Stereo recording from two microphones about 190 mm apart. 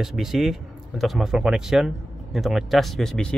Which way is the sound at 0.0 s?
Centre (ahead or behind).